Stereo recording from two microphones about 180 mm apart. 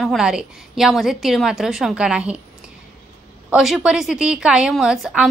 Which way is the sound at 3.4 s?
5° right (ahead or behind).